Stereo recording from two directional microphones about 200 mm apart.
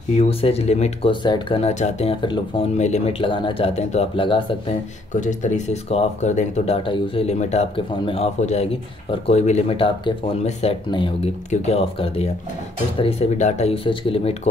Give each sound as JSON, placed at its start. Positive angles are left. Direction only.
{"t": 0.1, "sound": "speech", "side_deg": 30}
{"t": 5.1, "sound": "speech", "side_deg": 40}